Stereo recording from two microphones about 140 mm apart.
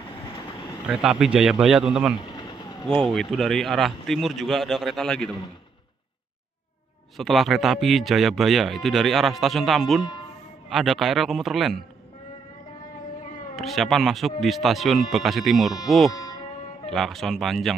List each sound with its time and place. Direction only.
0.8 s speech: 5° right (ahead or behind)
2.1 s vehicle: 35° left (ahead or behind)
3.0 s speech: centre (ahead or behind)
7.2 s speech: centre (ahead or behind)
13.6 s speech: centre (ahead or behind)
16.1 s music: 25° left (ahead or behind)
16.9 s speech: centre (ahead or behind)